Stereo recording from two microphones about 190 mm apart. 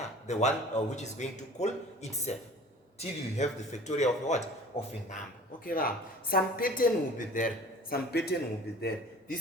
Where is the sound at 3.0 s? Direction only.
35° left (ahead or behind).